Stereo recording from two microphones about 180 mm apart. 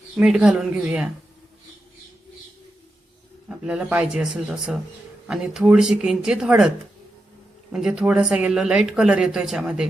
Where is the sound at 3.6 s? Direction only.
5° right (ahead or behind).